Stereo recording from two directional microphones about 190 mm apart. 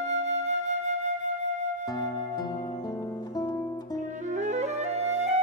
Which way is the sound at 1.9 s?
20° left (ahead or behind).